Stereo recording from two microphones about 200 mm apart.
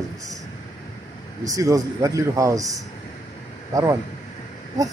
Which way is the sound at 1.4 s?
15° right (ahead or behind).